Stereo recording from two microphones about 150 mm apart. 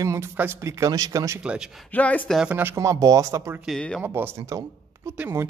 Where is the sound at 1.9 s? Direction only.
10° left (ahead or behind).